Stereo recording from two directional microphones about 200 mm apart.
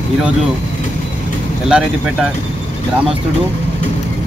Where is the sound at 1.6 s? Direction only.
5° right (ahead or behind).